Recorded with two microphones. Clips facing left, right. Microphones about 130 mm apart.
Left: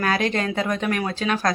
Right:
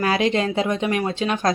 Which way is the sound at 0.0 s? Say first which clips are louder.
Right 3 dB; 25° right (ahead or behind).